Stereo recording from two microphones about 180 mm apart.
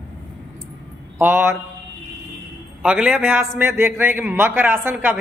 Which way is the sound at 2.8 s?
5° right (ahead or behind).